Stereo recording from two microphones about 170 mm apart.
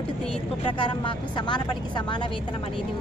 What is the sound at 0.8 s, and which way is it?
A woman's voice, 30° left (ahead or behind).